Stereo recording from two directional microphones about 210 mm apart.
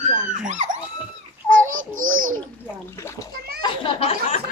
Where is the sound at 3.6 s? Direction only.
25° left (ahead or behind).